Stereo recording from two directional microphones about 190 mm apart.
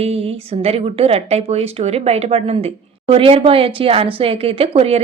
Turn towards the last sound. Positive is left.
turn(degrees=-30)  # may be behind; listen again after turning